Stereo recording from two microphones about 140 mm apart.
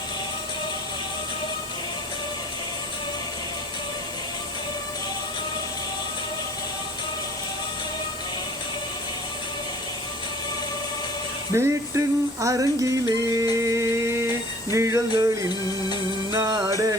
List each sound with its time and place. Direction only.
11.5 s music: 20° right (ahead or behind)
16.3 s music: 20° right (ahead or behind)